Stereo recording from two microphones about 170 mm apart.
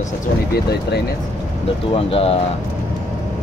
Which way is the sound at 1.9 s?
35° left (ahead or behind).